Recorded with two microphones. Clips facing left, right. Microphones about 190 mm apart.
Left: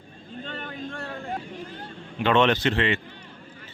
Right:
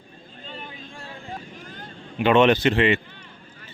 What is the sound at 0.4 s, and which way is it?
Vehicle, 70° left (ahead or behind).